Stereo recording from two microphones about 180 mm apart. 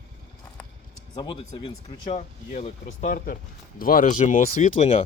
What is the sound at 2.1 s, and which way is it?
Speech, 40° left (ahead or behind).